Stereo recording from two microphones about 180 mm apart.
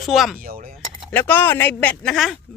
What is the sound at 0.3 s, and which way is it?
Speech, 55° right (ahead or behind).